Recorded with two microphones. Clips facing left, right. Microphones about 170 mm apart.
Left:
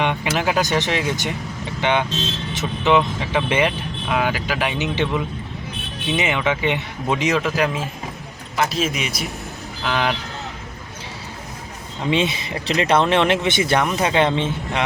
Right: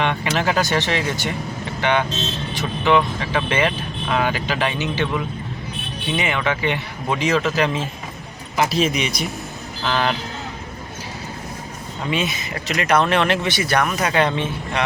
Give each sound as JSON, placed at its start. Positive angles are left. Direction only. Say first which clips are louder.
{"t": 0.0, "sound": "speech", "louder": "even", "side_deg": 15}
{"t": 4.8, "sound": "speech", "louder": "left 1 dB", "side_deg": 20}
{"t": 12.1, "sound": "speech", "louder": "left 3 dB", "side_deg": 30}